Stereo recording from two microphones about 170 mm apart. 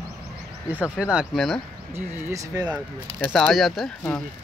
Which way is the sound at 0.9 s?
5° right (ahead or behind).